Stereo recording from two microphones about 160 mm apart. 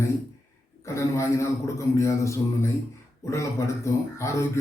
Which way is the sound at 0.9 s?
20° left (ahead or behind).